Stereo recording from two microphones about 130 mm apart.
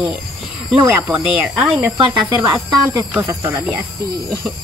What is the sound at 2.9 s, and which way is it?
Speech, 20° right (ahead or behind).